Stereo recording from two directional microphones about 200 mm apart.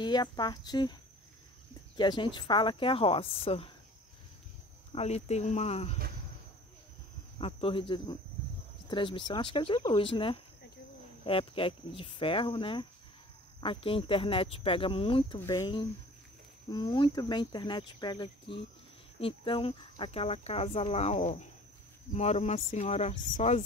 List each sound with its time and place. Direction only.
0.0 s speech: 20° left (ahead or behind)
2.0 s speech: 20° left (ahead or behind)
4.9 s speech: 35° left (ahead or behind)
7.3 s speech: 25° left (ahead or behind)